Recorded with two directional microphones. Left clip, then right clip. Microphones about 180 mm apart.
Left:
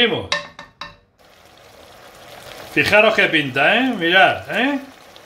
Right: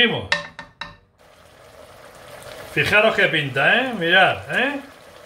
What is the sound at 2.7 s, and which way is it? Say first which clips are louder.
Speech: left 3 dB; 50° left (ahead or behind).